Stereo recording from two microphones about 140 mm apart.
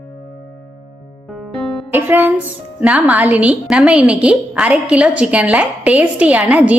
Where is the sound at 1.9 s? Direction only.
15° right (ahead or behind).